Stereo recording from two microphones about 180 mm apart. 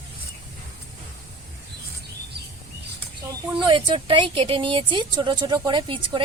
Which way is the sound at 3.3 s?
25° right (ahead or behind).